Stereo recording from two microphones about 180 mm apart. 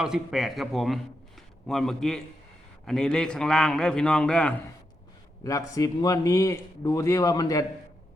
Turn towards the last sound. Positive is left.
turn(degrees=20)  # may be behind; listen again after turning